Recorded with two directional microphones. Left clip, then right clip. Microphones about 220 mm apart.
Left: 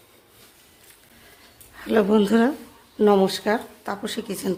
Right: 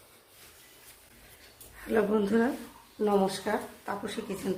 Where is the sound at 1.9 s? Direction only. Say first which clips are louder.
Left 7 dB; 50° left (ahead or behind).